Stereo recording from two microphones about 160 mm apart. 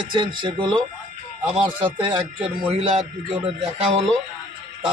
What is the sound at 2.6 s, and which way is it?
Speech, 40° right (ahead or behind).